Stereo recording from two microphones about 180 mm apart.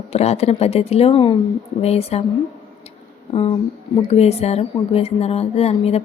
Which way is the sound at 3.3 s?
30° left (ahead or behind).